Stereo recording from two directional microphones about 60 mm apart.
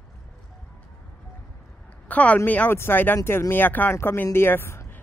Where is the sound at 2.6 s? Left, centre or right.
Left.